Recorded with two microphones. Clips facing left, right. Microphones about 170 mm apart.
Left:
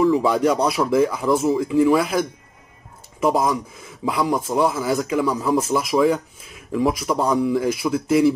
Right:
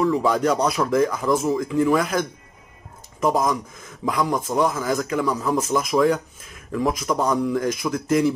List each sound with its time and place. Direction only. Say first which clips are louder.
0.0 s speech: left 3 dB; 5° left (ahead or behind)